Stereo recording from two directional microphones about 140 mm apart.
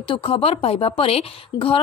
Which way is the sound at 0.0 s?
40° left (ahead or behind).